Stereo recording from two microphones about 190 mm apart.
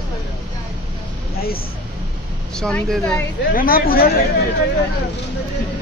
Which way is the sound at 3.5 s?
50° left (ahead or behind).